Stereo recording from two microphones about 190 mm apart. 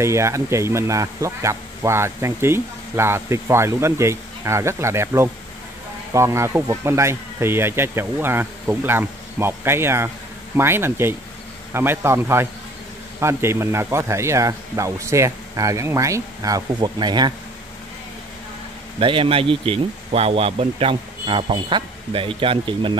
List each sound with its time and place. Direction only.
0.0 s speech: 15° right (ahead or behind)
18.9 s speech: 25° right (ahead or behind)